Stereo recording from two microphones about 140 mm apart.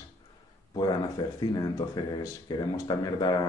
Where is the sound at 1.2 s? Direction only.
30° left (ahead or behind).